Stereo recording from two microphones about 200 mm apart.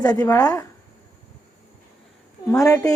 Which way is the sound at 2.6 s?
15° left (ahead or behind).